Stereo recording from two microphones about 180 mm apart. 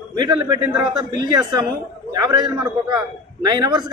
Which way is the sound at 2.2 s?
20° right (ahead or behind).